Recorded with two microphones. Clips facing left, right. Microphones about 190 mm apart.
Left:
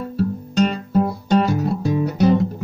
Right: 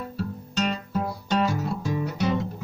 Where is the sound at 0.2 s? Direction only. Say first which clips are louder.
Left 10 dB; 40° left (ahead or behind).